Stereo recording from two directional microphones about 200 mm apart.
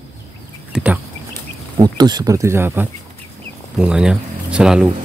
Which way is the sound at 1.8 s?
20° right (ahead or behind).